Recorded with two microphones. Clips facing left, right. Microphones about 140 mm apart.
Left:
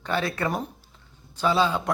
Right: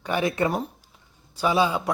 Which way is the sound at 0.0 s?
15° right (ahead or behind).